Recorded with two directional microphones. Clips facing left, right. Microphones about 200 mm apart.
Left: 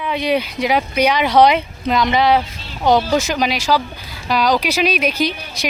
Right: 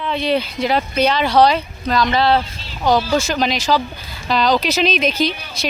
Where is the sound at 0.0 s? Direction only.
10° left (ahead or behind).